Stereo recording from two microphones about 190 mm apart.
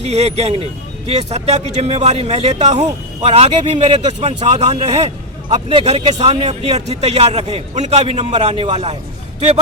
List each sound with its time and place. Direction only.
0.0 s speech: 35° right (ahead or behind)